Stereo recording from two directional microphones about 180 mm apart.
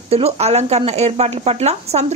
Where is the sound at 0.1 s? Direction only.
35° right (ahead or behind).